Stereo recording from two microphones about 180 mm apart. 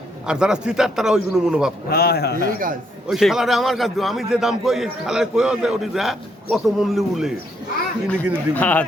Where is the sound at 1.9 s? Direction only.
60° left (ahead or behind).